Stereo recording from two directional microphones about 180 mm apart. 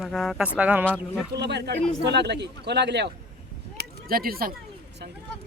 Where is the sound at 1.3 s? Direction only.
70° right (ahead or behind).